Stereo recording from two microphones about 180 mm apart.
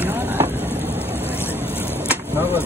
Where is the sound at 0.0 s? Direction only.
10° right (ahead or behind).